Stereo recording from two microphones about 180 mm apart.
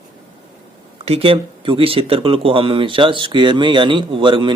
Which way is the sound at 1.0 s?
35° right (ahead or behind).